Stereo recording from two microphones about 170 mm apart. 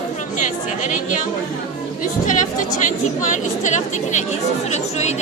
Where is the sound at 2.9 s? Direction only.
50° left (ahead or behind).